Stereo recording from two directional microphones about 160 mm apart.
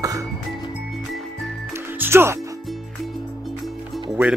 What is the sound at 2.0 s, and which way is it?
Music, 15° right (ahead or behind).